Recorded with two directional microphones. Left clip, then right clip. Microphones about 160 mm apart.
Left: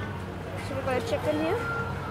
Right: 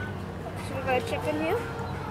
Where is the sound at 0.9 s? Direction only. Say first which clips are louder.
Even; 10° left (ahead or behind).